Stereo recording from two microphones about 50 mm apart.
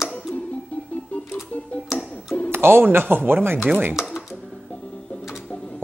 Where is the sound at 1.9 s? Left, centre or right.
Centre.